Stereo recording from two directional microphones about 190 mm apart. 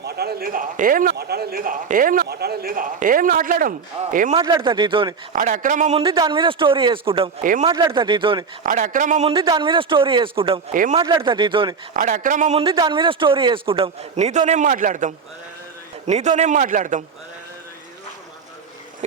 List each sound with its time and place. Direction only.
0.0 s a man's voice: 55° right (ahead or behind)
4.4 s a man's voice: 25° right (ahead or behind)
5.3 s a man's voice: 45° right (ahead or behind); by 7.3 s 30° right (ahead or behind)
7.4 s a man's voice: 45° right (ahead or behind)
7.9 s a man's voice: 25° right (ahead or behind)
8.6 s a man's voice: 45° right (ahead or behind)
10.7 s a man's voice: 45° right (ahead or behind)
10.9 s a man's voice: 25° right (ahead or behind)
11.9 s a man's voice: 45° right (ahead or behind)